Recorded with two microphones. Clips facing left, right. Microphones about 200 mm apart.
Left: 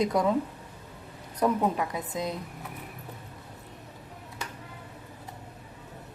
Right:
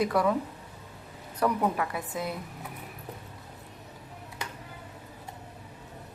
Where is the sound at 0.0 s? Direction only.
20° left (ahead or behind).